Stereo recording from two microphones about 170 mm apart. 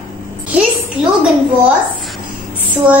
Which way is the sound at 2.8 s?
5° right (ahead or behind).